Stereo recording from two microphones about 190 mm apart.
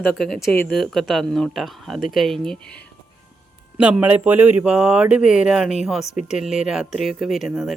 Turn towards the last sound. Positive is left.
turn(degrees=0)  # may be behind; listen again after turning